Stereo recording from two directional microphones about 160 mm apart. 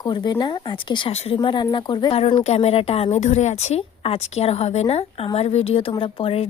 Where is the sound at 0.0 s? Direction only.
25° left (ahead or behind).